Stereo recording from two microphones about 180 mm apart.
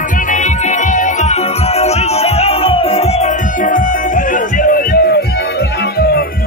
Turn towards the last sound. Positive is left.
turn(degrees=55)  # may be behind; listen again after turning